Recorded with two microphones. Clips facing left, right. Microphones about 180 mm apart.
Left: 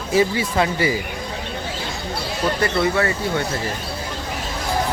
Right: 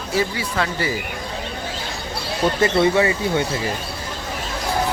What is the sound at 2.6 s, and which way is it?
Speech, 25° right (ahead or behind).